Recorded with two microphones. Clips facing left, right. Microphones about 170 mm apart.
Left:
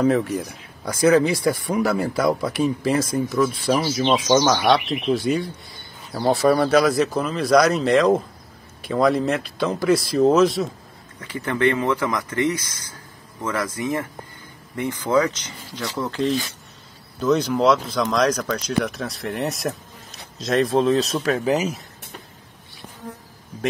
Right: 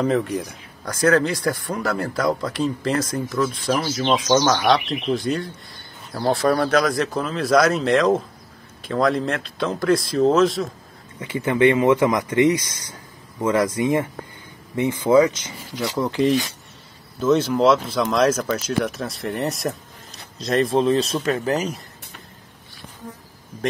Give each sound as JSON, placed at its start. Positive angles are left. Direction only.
{"t": 0.0, "sound": "speech", "side_deg": 5}
{"t": 11.1, "sound": "speech", "side_deg": -10}
{"t": 14.8, "sound": "speech", "side_deg": -20}